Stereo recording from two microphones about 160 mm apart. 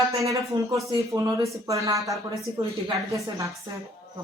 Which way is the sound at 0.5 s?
30° right (ahead or behind).